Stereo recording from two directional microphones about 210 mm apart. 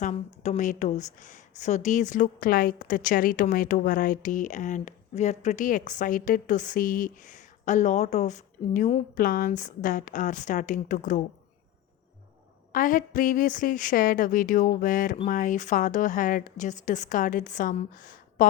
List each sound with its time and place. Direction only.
0.4 s speech: 35° left (ahead or behind)
12.7 s speech: 40° left (ahead or behind)